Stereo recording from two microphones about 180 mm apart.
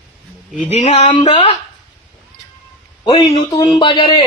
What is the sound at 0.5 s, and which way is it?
A man's voice, 40° left (ahead or behind).